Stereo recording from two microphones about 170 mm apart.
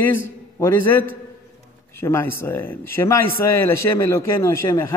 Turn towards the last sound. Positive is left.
turn(degrees=15)  # may be behind; listen again after turning